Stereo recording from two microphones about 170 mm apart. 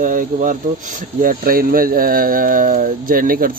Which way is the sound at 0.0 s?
50° right (ahead or behind).